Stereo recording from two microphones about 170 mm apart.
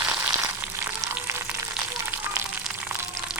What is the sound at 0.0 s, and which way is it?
Frying, 15° right (ahead or behind).